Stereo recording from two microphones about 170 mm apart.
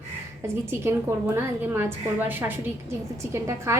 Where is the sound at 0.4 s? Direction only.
15° right (ahead or behind).